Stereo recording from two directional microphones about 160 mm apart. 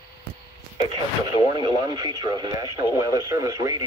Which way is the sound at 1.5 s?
25° right (ahead or behind).